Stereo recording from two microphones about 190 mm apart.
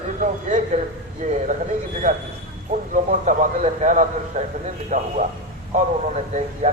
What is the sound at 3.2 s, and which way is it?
A man's voice, 40° right (ahead or behind).